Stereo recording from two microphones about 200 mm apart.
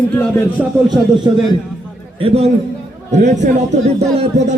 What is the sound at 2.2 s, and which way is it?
A man's voice, 30° right (ahead or behind).